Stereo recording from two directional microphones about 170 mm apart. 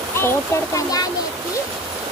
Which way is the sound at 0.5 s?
20° left (ahead or behind).